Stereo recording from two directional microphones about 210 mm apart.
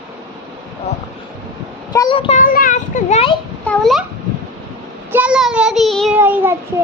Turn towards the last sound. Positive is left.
turn(degrees=-10)  # may be behind; listen again after turning